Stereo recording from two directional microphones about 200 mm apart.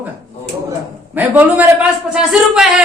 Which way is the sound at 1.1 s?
10° right (ahead or behind).